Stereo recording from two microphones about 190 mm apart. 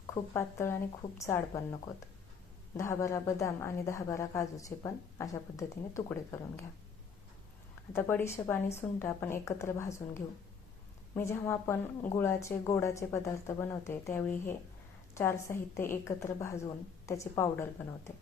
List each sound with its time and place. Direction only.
0.1 s speech: 15° left (ahead or behind)
7.9 s speech: 15° left (ahead or behind)